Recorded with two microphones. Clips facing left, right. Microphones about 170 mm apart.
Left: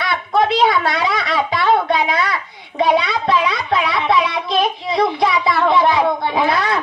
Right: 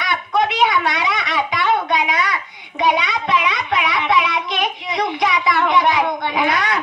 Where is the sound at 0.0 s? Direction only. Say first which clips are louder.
Left 2 dB; 30° left (ahead or behind).